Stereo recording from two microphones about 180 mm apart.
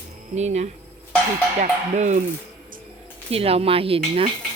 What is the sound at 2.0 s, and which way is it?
Speech, 40° right (ahead or behind).